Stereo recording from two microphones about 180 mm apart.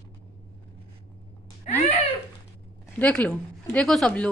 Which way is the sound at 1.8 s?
40° left (ahead or behind).